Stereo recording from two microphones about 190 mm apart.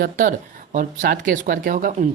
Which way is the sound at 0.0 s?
45° right (ahead or behind).